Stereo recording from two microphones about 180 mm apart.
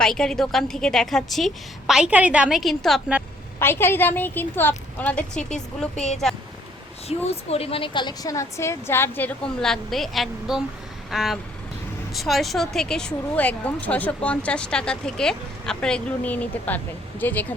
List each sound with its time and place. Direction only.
0.0 s a woman's voice: 5° left (ahead or behind)
3.6 s a woman's voice: 10° left (ahead or behind)
7.1 s a woman's voice: 35° left (ahead or behind); by 17.4 s 10° left (ahead or behind)